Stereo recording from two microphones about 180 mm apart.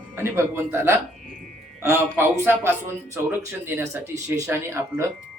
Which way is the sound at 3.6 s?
15° right (ahead or behind).